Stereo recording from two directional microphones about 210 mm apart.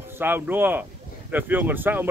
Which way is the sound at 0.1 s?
10° right (ahead or behind).